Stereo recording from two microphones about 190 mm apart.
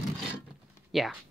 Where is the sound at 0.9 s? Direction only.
Centre (ahead or behind).